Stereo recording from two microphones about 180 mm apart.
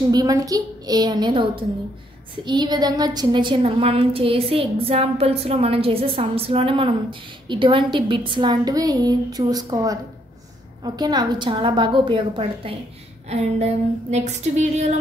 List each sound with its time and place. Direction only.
0.1 s a woman's voice: 20° right (ahead or behind); by 15.0 s 40° right (ahead or behind)